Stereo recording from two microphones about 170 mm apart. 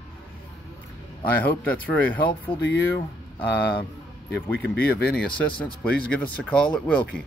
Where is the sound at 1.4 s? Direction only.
10° left (ahead or behind).